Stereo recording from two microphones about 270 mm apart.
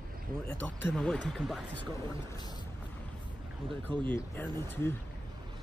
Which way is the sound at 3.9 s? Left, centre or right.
Centre.